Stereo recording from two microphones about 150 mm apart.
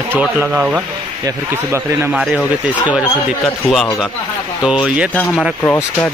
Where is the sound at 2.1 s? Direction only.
5° right (ahead or behind).